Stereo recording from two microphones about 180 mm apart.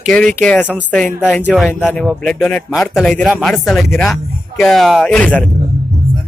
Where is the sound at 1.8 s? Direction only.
Centre (ahead or behind).